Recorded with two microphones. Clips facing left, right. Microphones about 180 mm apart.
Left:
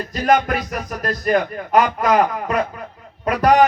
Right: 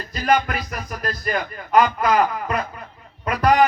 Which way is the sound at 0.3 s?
45° left (ahead or behind).